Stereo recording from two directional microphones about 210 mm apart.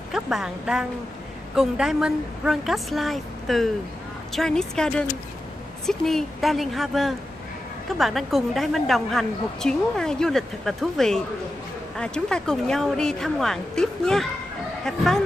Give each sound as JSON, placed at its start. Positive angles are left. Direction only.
{"t": 0.1, "sound": "a woman's voice", "side_deg": 0}